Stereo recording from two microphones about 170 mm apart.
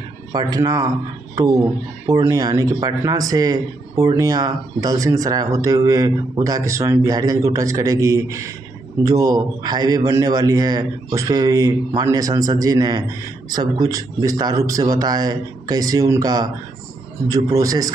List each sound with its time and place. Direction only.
0.3 s speech: 25° right (ahead or behind)
17.5 s speech: 20° right (ahead or behind)